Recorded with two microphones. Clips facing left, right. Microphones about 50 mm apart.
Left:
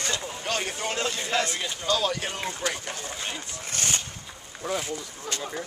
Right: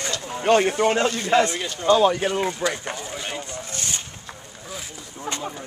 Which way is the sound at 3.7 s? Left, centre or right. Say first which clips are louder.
Left 3 dB; left.